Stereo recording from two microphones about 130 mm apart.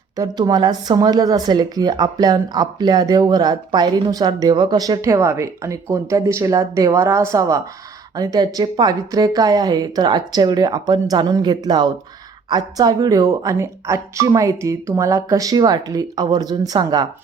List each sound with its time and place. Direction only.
0.2 s speech: 30° right (ahead or behind)